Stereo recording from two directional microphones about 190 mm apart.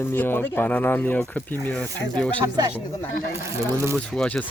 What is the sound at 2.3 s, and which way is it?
Speech, 20° right (ahead or behind).